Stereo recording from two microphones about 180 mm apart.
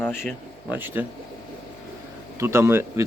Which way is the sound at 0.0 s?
10° left (ahead or behind).